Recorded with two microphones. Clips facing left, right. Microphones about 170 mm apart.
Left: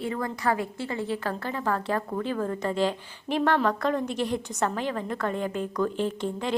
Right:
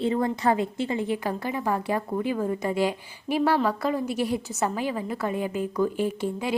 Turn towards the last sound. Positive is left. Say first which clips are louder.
# right 1 dB
turn(degrees=-10)  # may be behind; listen again after turning